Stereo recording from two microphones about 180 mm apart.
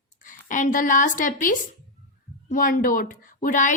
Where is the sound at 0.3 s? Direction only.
45° left (ahead or behind).